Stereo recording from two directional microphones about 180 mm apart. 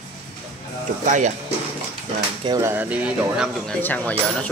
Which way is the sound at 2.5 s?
15° right (ahead or behind).